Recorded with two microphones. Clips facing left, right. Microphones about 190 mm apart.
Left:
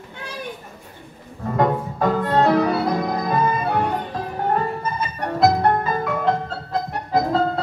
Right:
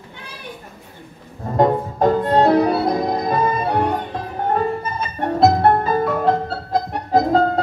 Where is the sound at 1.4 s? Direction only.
35° right (ahead or behind).